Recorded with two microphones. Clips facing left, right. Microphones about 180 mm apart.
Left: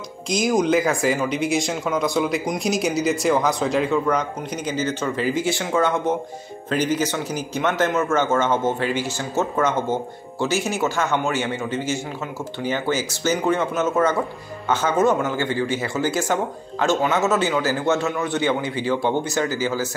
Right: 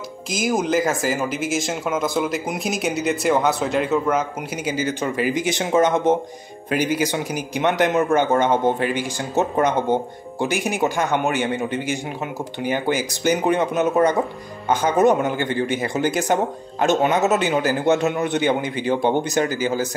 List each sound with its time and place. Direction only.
0.3 s a man's voice: 5° right (ahead or behind)